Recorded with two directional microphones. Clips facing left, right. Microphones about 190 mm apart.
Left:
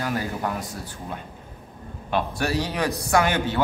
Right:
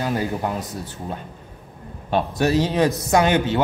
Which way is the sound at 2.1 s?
20° right (ahead or behind).